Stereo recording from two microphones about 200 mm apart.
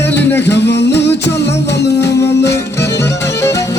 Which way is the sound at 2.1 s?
15° left (ahead or behind).